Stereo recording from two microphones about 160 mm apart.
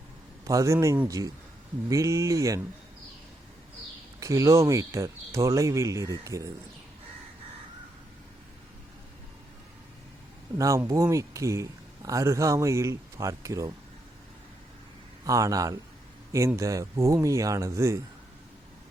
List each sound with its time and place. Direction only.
0.4 s speech: 20° right (ahead or behind)
4.2 s speech: 20° right (ahead or behind)
10.6 s speech: 20° right (ahead or behind)
15.2 s speech: 20° right (ahead or behind)